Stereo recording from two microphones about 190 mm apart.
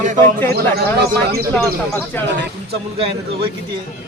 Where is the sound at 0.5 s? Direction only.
55° right (ahead or behind).